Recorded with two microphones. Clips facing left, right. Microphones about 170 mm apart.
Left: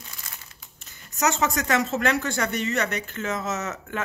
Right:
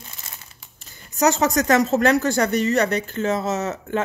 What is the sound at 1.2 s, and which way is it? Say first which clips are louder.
Speech: right 6 dB; 35° right (ahead or behind).